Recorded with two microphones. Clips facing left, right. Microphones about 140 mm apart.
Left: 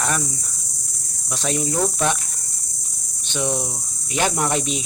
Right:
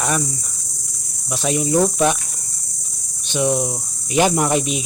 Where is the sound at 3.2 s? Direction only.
15° right (ahead or behind).